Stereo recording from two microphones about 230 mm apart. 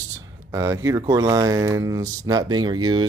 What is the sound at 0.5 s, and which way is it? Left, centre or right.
Speech, centre.